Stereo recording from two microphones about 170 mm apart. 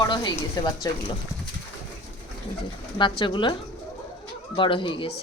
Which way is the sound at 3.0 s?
30° left (ahead or behind).